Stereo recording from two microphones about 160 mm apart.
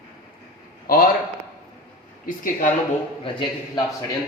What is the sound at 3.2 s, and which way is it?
Speech, 30° left (ahead or behind).